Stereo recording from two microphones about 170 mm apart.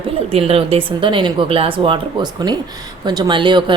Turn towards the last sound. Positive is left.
turn(degrees=-30)  # may be behind; listen again after turning